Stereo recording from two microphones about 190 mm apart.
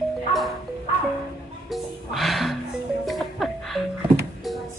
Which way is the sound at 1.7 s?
Centre (ahead or behind).